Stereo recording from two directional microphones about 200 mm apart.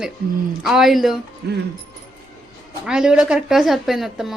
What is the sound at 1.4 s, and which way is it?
Speech, 55° right (ahead or behind).